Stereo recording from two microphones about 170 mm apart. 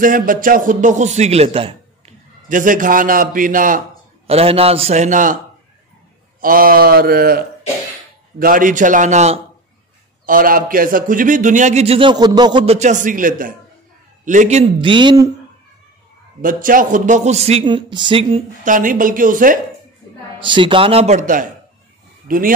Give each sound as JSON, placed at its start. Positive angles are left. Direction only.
{"t": 0.0, "sound": "a man's voice", "side_deg": -55}
{"t": 2.5, "sound": "a man's voice", "side_deg": -50}
{"t": 4.3, "sound": "a man's voice", "side_deg": -35}
{"t": 6.4, "sound": "mantra", "side_deg": -55}
{"t": 8.4, "sound": "a man's voice", "side_deg": -55}
{"t": 10.2, "sound": "a man's voice", "side_deg": -55}
{"t": 12.6, "sound": "a man's voice", "side_deg": -45}
{"t": 16.3, "sound": "a man's voice", "side_deg": -55}
{"t": 18.6, "sound": "a man's voice", "side_deg": -50}
{"t": 20.3, "sound": "a man's voice", "side_deg": -30}
{"t": 22.3, "sound": "mantra", "side_deg": -55}